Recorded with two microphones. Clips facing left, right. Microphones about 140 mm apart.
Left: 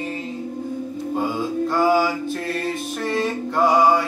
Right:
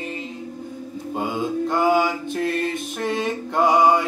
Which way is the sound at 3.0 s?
20° right (ahead or behind).